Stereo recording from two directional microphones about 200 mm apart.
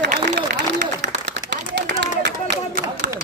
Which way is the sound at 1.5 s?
60° right (ahead or behind).